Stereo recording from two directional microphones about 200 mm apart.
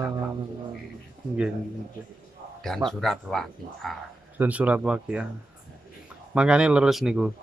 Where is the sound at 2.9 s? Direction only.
Centre (ahead or behind).